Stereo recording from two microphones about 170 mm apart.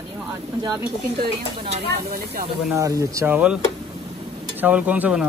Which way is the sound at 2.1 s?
60° right (ahead or behind).